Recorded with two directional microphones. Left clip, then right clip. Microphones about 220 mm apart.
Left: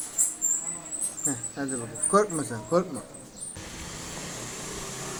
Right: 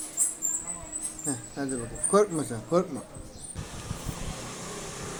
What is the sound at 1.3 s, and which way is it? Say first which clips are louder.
Speech: even; 25° right (ahead or behind).